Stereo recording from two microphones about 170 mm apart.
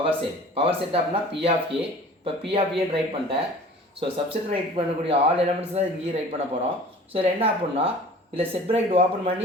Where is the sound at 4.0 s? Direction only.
30° right (ahead or behind).